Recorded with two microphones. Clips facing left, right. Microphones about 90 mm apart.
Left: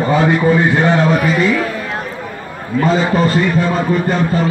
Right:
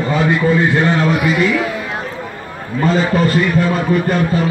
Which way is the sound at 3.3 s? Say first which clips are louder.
Even; 30° left (ahead or behind).